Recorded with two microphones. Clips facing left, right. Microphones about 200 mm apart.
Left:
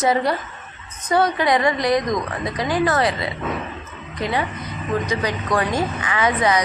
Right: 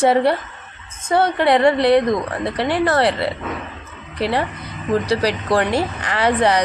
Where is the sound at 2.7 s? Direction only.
30° right (ahead or behind).